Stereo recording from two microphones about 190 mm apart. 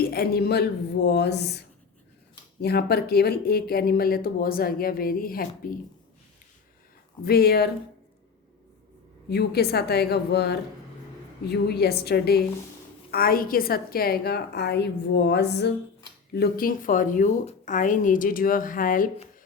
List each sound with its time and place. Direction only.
0.0 s a woman's voice: 55° left (ahead or behind)
7.3 s a woman's voice: 55° left (ahead or behind)
9.3 s a woman's voice: 60° left (ahead or behind)